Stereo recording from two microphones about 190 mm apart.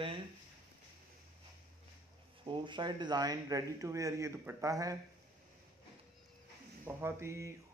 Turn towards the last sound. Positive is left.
turn(degrees=-15)  # may be behind; listen again after turning